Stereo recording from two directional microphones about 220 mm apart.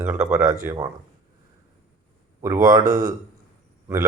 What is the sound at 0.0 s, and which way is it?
Speech, 10° right (ahead or behind).